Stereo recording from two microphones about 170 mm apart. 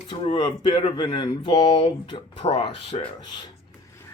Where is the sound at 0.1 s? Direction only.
30° left (ahead or behind).